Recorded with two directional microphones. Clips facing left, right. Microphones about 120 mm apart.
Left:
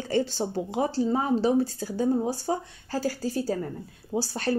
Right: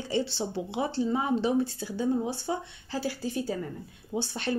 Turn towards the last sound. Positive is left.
turn(degrees=40)  # may be behind; listen again after turning